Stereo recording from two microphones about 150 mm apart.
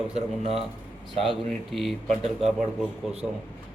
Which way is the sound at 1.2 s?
Centre (ahead or behind).